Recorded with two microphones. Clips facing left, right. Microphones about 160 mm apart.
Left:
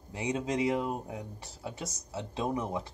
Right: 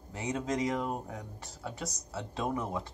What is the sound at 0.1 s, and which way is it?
Speech, 15° left (ahead or behind).